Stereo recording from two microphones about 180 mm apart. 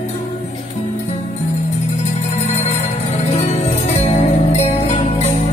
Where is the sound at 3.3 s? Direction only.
40° left (ahead or behind).